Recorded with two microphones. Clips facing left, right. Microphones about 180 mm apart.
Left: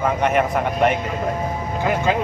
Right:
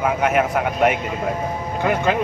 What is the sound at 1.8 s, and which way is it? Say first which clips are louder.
Speech: right 1 dB; 55° right (ahead or behind).